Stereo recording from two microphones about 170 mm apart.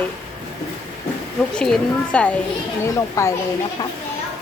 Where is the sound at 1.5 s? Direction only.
5° left (ahead or behind).